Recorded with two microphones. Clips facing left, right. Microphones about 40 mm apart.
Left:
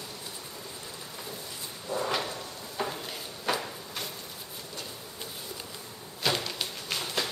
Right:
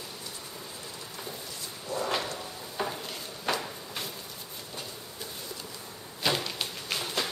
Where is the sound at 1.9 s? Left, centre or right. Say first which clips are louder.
Left 1 dB; left.